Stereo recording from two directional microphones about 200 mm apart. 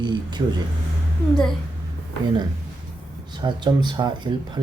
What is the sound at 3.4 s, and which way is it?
Speech, 20° right (ahead or behind).